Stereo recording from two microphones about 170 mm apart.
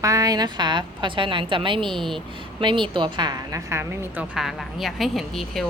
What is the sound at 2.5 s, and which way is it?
A woman's voice, 30° right (ahead or behind).